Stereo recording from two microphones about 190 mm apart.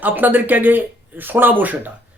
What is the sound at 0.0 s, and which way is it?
Speech, 10° right (ahead or behind).